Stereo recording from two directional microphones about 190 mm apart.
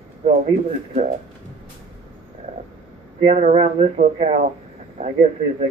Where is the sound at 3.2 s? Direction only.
35° right (ahead or behind).